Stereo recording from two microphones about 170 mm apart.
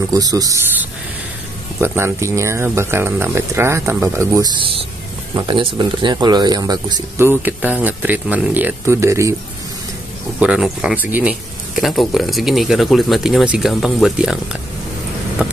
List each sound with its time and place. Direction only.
0.1 s speech: 20° right (ahead or behind)
1.8 s speech: 15° right (ahead or behind)
5.3 s speech: 30° right (ahead or behind)
10.4 s speech: 5° right (ahead or behind)
15.4 s a sound: 5° right (ahead or behind)